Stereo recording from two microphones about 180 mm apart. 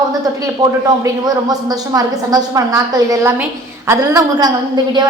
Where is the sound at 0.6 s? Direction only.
20° right (ahead or behind).